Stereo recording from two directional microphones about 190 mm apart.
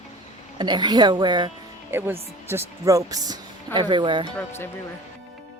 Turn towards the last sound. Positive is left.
turn(degrees=10)  # may be behind; listen again after turning